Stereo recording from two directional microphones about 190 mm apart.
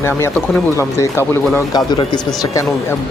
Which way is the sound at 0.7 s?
15° left (ahead or behind).